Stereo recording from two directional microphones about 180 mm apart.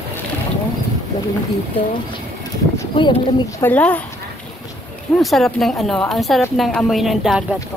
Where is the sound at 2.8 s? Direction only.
25° left (ahead or behind).